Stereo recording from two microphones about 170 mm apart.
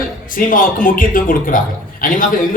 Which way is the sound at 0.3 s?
55° left (ahead or behind).